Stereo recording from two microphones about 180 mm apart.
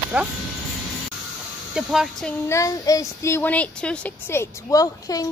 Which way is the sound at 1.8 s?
Centre (ahead or behind).